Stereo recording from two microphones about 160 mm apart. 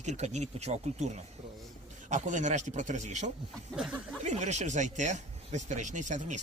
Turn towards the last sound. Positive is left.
turn(degrees=-50)  # may be behind; listen again after turning